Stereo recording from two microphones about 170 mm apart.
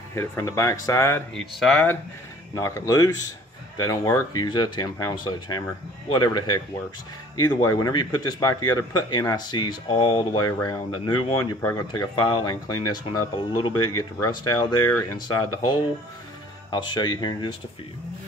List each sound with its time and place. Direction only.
0.1 s speech: 15° left (ahead or behind)
1.3 s speech: centre (ahead or behind)
2.5 s speech: 20° left (ahead or behind)
16.7 s speech: 25° left (ahead or behind)